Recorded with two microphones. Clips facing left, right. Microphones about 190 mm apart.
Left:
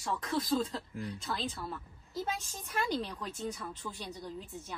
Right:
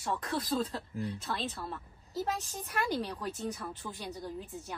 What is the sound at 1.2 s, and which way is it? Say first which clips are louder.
Speech: even; centre (ahead or behind).